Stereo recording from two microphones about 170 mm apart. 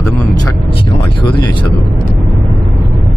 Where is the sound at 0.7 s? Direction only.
30° left (ahead or behind).